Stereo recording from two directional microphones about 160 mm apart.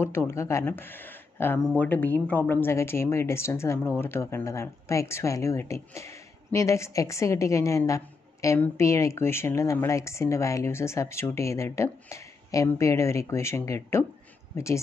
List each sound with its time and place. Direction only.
0.0 s speech: 15° left (ahead or behind)